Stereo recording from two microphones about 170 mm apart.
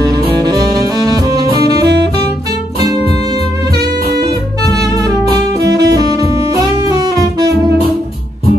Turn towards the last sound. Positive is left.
turn(degrees=-25)  # may be behind; listen again after turning